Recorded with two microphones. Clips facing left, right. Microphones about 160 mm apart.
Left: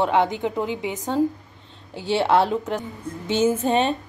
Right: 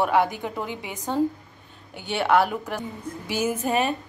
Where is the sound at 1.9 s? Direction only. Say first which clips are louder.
Left 2 dB; 30° left (ahead or behind).